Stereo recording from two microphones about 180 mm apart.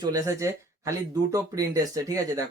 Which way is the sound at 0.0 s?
20° right (ahead or behind).